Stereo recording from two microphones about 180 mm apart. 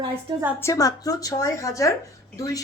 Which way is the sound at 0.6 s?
20° left (ahead or behind).